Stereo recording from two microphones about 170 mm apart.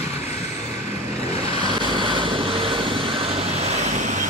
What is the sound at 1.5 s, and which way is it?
Vehicle, 25° right (ahead or behind).